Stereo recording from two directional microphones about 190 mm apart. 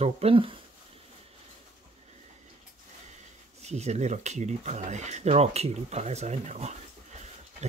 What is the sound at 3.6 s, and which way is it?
Speech, 35° right (ahead or behind).